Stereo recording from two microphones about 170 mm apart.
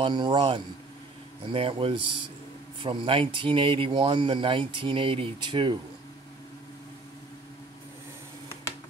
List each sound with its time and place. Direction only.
0.0 s speech: 25° right (ahead or behind)